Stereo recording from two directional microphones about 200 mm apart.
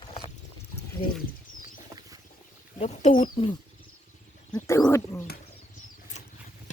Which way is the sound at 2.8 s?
35° left (ahead or behind).